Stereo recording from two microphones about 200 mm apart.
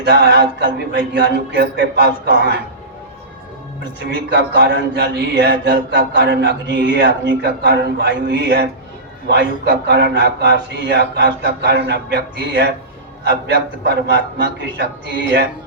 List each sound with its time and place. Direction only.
0.0 s speech: 55° right (ahead or behind)
4.1 s speech: 55° right (ahead or behind)